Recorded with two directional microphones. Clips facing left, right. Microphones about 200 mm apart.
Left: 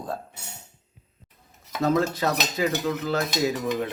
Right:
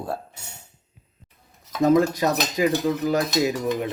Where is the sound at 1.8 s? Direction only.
15° right (ahead or behind).